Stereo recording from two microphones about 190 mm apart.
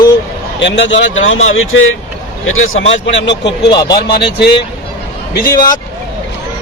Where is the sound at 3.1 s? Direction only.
70° left (ahead or behind).